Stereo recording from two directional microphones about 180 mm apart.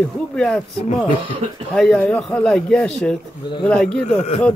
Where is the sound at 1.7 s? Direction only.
5° left (ahead or behind).